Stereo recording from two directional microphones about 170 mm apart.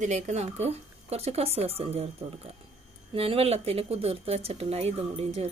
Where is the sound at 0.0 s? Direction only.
45° right (ahead or behind).